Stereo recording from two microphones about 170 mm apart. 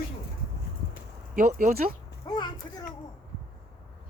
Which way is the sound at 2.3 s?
25° left (ahead or behind).